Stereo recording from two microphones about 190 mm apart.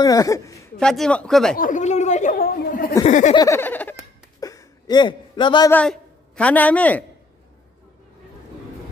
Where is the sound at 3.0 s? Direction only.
35° left (ahead or behind).